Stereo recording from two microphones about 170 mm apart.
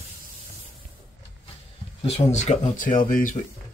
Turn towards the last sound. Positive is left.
turn(degrees=50)  # may be behind; listen again after turning